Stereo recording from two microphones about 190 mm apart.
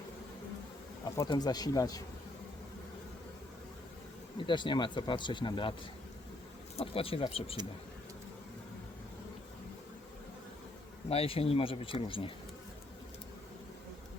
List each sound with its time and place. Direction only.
1.1 s speech: 20° left (ahead or behind)
4.4 s speech: 25° left (ahead or behind)
6.7 s speech: 30° left (ahead or behind)
11.1 s speech: 30° left (ahead or behind)